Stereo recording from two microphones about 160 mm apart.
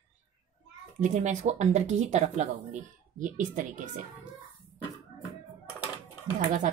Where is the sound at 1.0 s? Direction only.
50° right (ahead or behind).